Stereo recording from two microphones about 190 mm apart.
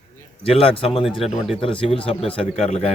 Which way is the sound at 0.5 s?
30° left (ahead or behind).